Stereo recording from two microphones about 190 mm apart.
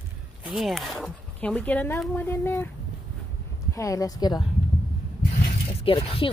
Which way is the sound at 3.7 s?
15° left (ahead or behind).